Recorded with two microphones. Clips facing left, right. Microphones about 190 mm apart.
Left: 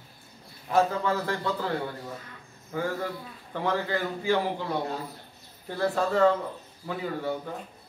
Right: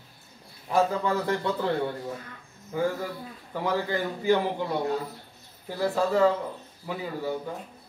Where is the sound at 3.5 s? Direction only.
10° right (ahead or behind).